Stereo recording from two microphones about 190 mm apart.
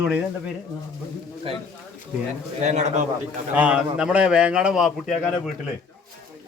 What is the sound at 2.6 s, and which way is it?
Speech, 40° right (ahead or behind).